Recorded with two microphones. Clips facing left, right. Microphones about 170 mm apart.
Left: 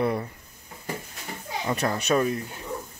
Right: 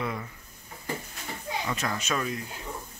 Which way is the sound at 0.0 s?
35° left (ahead or behind).